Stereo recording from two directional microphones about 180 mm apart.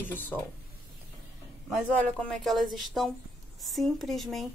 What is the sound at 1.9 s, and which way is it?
Speech, 5° left (ahead or behind).